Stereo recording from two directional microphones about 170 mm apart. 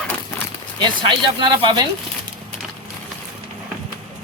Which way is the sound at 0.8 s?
30° right (ahead or behind).